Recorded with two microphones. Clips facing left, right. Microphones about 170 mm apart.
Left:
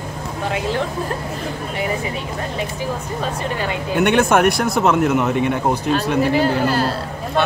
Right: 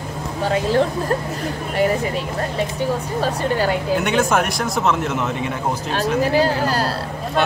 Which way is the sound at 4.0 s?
60° left (ahead or behind).